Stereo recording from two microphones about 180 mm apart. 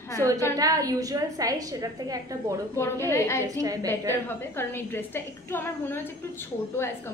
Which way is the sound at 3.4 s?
20° right (ahead or behind).